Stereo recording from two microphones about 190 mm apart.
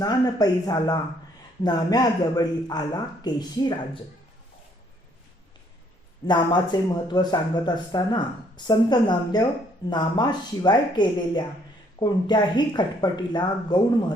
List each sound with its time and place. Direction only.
0.0 s speech: 20° left (ahead or behind)
6.2 s speech: 25° left (ahead or behind)